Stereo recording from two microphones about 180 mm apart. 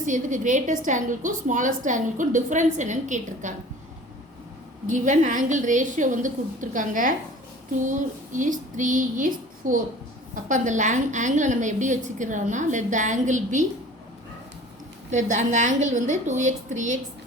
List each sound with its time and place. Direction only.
0.0 s a woman's voice: 45° right (ahead or behind)
4.9 s a woman's voice: 45° right (ahead or behind)
15.1 s a woman's voice: 40° right (ahead or behind)